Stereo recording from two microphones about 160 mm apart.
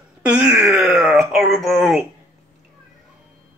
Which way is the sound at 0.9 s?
Centre (ahead or behind).